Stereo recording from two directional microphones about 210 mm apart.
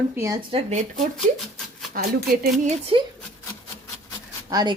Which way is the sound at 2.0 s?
45° right (ahead or behind).